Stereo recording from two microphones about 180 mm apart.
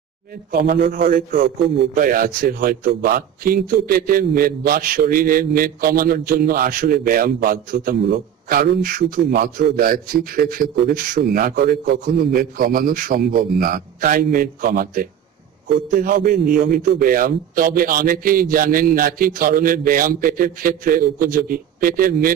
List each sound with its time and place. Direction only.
0.5 s a man's voice: 60° right (ahead or behind)
2.0 s a man's voice: 50° right (ahead or behind)